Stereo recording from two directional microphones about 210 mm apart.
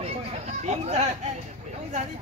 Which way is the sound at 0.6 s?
30° right (ahead or behind).